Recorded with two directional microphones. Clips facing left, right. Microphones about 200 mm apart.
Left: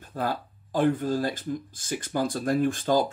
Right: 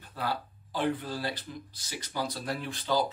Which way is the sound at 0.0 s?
45° left (ahead or behind).